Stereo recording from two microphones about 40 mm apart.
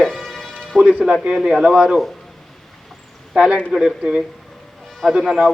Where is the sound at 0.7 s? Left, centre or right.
Centre.